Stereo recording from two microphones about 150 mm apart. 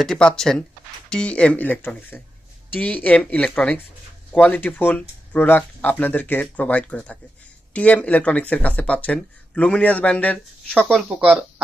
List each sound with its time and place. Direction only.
0.0 s speech: 5° left (ahead or behind)